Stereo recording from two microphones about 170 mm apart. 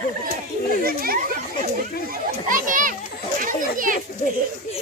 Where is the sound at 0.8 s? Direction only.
60° right (ahead or behind).